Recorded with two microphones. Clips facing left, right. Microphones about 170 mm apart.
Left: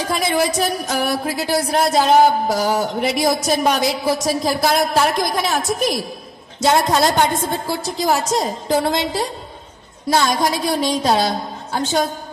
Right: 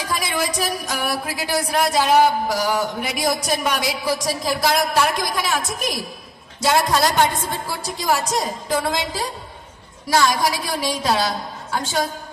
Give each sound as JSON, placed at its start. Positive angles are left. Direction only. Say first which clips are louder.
{"t": 0.1, "sound": "speech", "louder": "left 5 dB", "side_deg": 30}
{"t": 6.6, "sound": "speech", "louder": "left 3 dB", "side_deg": 25}